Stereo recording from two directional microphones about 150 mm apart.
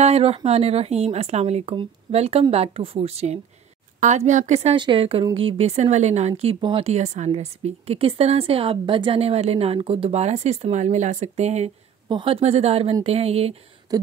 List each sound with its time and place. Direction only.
0.0 s speech: 45° right (ahead or behind)
4.7 s speech: 35° right (ahead or behind)
12.1 s speech: 35° right (ahead or behind)
13.9 s a sound: 25° right (ahead or behind)